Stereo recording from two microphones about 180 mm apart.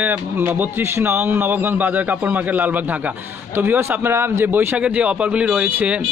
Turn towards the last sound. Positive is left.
turn(degrees=-10)  # may be behind; listen again after turning